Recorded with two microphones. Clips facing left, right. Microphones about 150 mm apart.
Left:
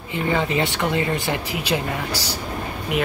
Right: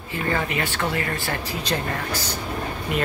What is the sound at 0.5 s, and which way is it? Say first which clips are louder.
Speech: left 4 dB; 20° left (ahead or behind).